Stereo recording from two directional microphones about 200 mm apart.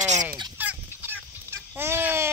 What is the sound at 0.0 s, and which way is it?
Fowl, 35° right (ahead or behind).